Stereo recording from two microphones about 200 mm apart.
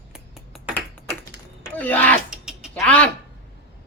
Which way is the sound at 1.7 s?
10° left (ahead or behind).